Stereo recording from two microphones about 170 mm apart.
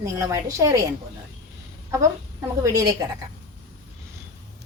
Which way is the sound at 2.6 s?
20° right (ahead or behind).